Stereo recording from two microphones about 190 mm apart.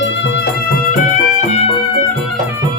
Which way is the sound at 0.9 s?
45° left (ahead or behind).